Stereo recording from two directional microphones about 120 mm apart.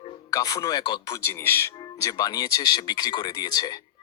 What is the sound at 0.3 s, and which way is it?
Speech, 30° left (ahead or behind).